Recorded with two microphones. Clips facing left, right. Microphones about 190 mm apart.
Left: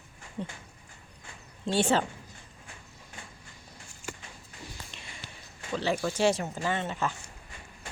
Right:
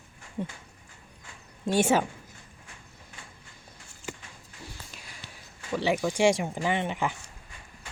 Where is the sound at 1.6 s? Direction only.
10° right (ahead or behind).